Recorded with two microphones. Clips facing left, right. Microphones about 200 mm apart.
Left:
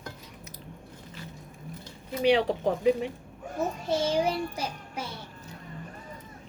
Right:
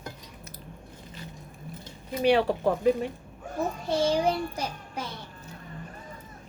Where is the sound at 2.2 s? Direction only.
15° left (ahead or behind).